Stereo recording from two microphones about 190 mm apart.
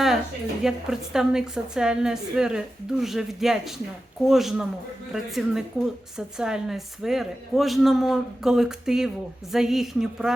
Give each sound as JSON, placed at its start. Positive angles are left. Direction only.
{"t": 0.6, "sound": "a woman's voice", "side_deg": -5}